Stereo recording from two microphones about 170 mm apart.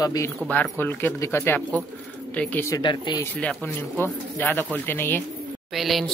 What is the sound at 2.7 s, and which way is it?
Speech, 25° left (ahead or behind).